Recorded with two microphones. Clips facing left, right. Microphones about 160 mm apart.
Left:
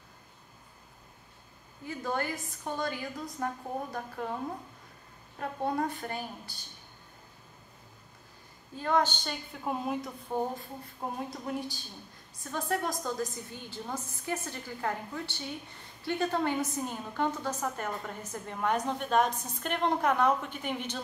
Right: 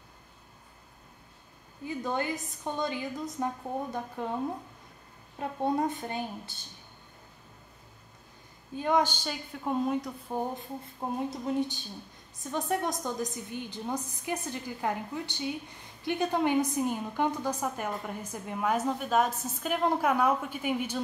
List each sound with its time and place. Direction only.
1.9 s a woman's voice: 20° right (ahead or behind)
5.4 s a woman's voice: 20° right (ahead or behind)
8.7 s a woman's voice: 15° right (ahead or behind); by 10.1 s centre (ahead or behind)
11.2 s a woman's voice: 20° right (ahead or behind)